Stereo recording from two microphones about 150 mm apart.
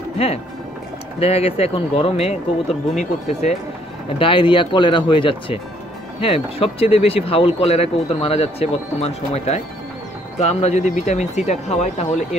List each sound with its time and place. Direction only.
0.2 s speech: 40° left (ahead or behind)
4.2 s speech: 35° left (ahead or behind); by 12.4 s 50° left (ahead or behind)